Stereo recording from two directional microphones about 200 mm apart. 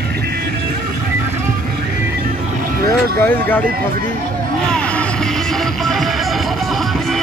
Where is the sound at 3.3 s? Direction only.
10° left (ahead or behind).